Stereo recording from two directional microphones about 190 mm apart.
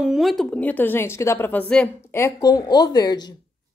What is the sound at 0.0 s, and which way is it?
A woman's voice, centre (ahead or behind).